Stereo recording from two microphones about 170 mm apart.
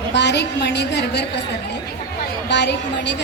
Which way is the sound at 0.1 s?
90° left.